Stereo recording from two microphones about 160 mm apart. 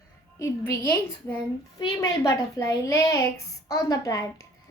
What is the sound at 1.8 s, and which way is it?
A child's voice, 20° left (ahead or behind).